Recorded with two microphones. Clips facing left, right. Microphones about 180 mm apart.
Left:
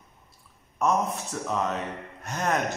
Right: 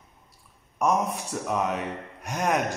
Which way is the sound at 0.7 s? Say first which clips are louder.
Right 1 dB; 15° right (ahead or behind).